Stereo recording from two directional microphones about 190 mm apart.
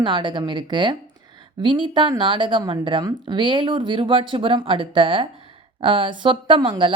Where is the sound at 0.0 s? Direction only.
25° right (ahead or behind).